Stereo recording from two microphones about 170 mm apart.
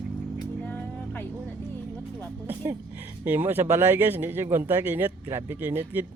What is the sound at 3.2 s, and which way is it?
Speech, 10° right (ahead or behind).